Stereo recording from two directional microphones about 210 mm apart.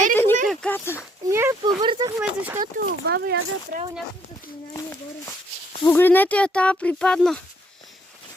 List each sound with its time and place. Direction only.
0.0 s a sound: 10° left (ahead or behind)
0.4 s speech: 5° left (ahead or behind)
1.3 s speech: 10° right (ahead or behind)
2.2 s speech: 5° right (ahead or behind)
3.1 s speech: 50° right (ahead or behind)
5.8 s speech: 10° left (ahead or behind)